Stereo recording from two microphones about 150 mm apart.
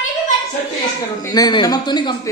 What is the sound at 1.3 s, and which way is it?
Speech, 25° left (ahead or behind).